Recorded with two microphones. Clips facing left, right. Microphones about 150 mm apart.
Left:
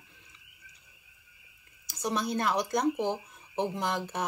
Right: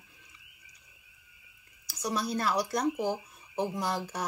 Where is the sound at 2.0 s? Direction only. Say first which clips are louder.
Left 1 dB; 25° left (ahead or behind).